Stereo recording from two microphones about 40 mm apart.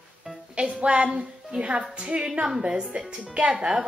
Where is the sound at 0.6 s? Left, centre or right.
Right.